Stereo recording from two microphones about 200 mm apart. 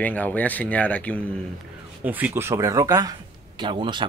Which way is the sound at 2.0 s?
10° right (ahead or behind).